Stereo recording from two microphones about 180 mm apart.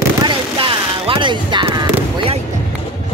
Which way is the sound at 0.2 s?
25° right (ahead or behind).